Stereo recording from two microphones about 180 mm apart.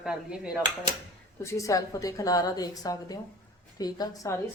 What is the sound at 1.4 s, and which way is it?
A woman's voice, 15° left (ahead or behind).